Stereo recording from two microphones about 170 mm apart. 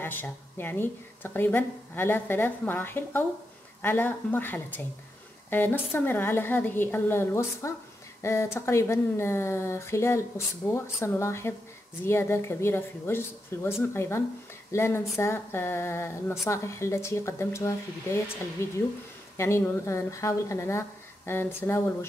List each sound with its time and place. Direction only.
0.0 s speech: 10° left (ahead or behind)